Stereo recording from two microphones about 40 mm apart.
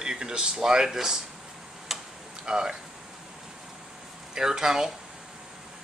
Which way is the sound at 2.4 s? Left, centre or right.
Centre.